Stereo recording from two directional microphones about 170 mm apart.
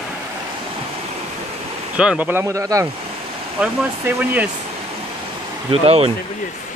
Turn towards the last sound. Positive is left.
turn(degrees=-35)  # may be behind; listen again after turning